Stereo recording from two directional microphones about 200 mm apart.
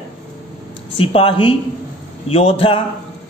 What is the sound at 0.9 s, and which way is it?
A man's voice, 25° left (ahead or behind).